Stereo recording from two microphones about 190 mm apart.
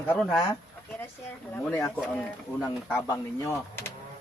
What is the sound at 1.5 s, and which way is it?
Speech, 10° left (ahead or behind).